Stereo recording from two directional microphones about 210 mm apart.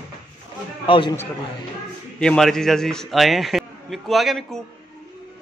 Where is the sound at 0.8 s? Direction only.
25° left (ahead or behind).